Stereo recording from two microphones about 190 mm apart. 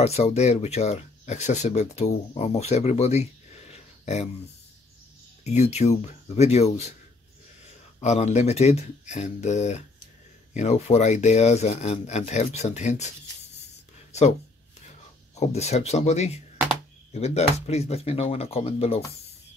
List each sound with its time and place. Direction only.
0.0 s speech: 35° left (ahead or behind)
5.4 s speech: 35° left (ahead or behind)
8.0 s speech: 35° left (ahead or behind)
15.3 s speech: 35° left (ahead or behind)